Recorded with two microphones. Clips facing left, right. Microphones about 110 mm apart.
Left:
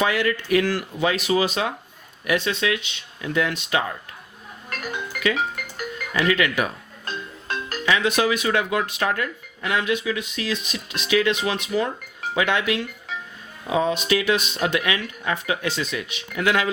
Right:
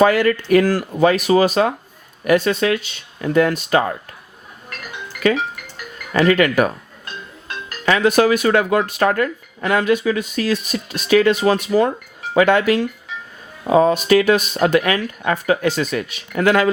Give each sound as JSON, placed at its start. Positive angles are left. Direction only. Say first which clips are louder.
{"t": 0.0, "sound": "speech", "louder": "right 8 dB", "side_deg": -45}
{"t": 6.1, "sound": "speech", "louder": "right 7 dB", "side_deg": -45}
{"t": 7.9, "sound": "speech", "louder": "right 7 dB", "side_deg": -45}